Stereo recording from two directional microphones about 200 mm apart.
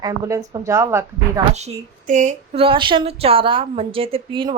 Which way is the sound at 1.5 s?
35° right (ahead or behind).